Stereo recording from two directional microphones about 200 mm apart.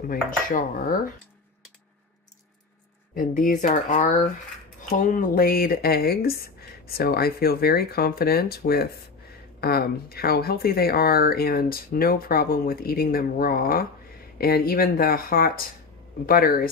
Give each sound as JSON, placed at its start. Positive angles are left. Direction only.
{"t": 0.1, "sound": "speech", "side_deg": 45}
{"t": 3.2, "sound": "speech", "side_deg": 45}